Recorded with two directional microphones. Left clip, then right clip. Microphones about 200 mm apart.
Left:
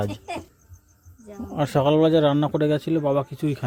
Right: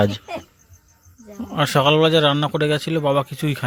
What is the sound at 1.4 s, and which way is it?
Speech, centre (ahead or behind).